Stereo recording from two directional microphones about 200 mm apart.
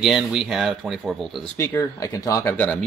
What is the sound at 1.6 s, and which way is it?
Speech, 15° left (ahead or behind).